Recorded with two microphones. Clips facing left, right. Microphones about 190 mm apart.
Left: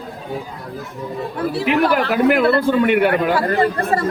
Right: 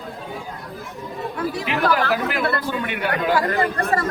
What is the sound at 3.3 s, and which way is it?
Speech, 35° left (ahead or behind).